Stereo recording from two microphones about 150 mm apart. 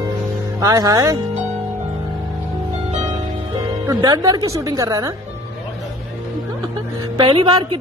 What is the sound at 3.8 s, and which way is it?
A woman's voice, 25° right (ahead or behind).